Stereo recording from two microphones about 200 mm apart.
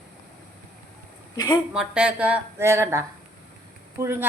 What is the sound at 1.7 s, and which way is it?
A woman's voice, 5° right (ahead or behind).